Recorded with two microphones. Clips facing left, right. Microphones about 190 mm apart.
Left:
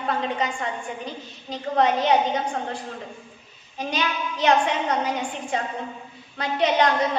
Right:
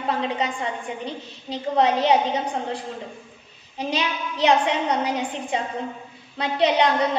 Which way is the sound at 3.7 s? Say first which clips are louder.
Right 1 dB; 30° right (ahead or behind).